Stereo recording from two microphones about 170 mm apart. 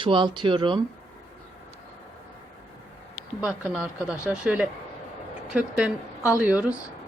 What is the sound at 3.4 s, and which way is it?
A woman's voice, 5° right (ahead or behind).